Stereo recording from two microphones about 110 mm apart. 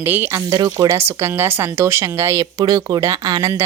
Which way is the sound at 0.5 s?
40° right (ahead or behind).